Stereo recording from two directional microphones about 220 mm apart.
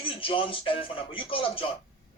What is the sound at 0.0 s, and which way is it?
A man's voice, 25° left (ahead or behind).